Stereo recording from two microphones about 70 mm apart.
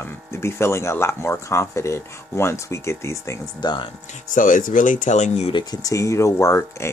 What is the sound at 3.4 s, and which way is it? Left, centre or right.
Speech, left.